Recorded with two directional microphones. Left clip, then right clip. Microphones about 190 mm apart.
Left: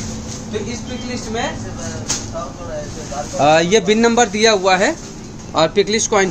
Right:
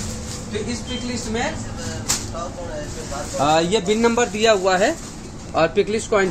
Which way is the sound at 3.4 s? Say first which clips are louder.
Left 5 dB; 40° left (ahead or behind).